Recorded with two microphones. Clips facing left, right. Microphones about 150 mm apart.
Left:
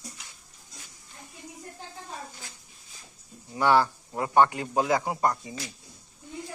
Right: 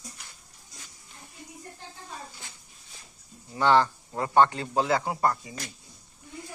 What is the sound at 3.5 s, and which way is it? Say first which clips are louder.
A man's voice: even; 10° left (ahead or behind).